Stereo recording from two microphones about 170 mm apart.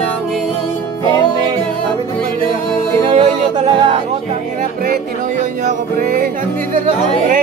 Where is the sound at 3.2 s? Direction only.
35° right (ahead or behind).